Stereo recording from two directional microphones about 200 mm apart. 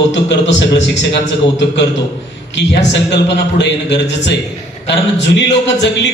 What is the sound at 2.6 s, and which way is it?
A man's voice, 60° left (ahead or behind).